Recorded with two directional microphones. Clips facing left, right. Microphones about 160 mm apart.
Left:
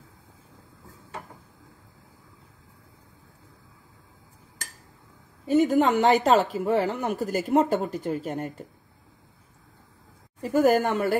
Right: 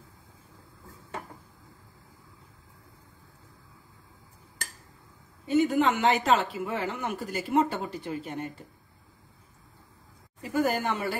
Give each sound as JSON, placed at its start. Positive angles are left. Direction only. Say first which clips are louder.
{"t": 5.5, "sound": "speech", "louder": "left 3 dB", "side_deg": 40}
{"t": 10.4, "sound": "speech", "louder": "left 7 dB", "side_deg": 45}